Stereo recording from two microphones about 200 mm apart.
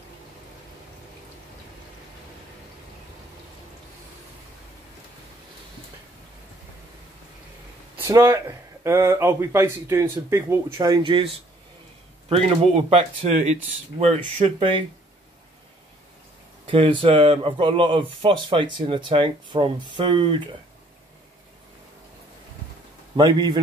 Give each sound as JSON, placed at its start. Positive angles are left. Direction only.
{"t": 8.0, "sound": "speech", "side_deg": -10}
{"t": 12.3, "sound": "speech", "side_deg": -30}
{"t": 16.6, "sound": "speech", "side_deg": -25}
{"t": 23.1, "sound": "speech", "side_deg": -20}